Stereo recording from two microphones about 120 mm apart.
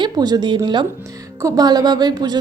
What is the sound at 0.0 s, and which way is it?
Speech, 35° right (ahead or behind).